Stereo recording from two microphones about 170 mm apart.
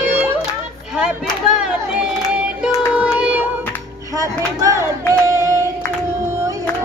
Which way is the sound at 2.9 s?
5° right (ahead or behind).